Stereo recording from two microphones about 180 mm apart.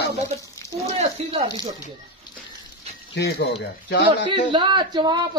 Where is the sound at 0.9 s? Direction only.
35° right (ahead or behind).